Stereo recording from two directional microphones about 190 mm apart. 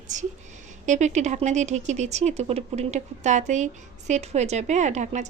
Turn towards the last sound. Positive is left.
turn(degrees=-40)  # may be behind; listen again after turning